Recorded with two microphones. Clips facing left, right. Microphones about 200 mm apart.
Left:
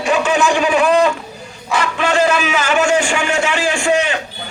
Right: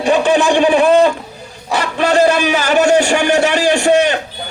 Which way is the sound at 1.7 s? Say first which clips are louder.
Right 3 dB; 35° right (ahead or behind).